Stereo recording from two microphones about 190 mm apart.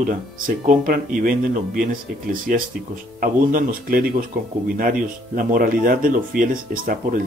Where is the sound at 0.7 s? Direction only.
45° right (ahead or behind).